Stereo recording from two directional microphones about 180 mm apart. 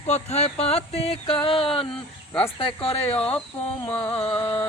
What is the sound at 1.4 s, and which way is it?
Music, 30° left (ahead or behind).